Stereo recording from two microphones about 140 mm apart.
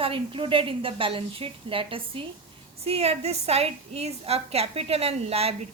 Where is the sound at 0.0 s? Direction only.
40° right (ahead or behind).